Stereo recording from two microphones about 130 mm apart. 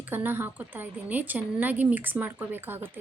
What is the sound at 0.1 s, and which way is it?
A woman's voice, 15° right (ahead or behind).